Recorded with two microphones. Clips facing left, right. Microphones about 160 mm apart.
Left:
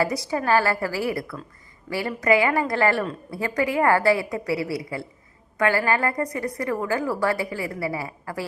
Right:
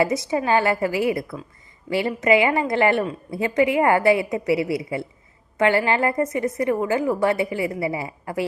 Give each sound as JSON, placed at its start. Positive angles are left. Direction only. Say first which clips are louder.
{"t": 0.0, "sound": "a woman's voice", "louder": "right 3 dB", "side_deg": -20}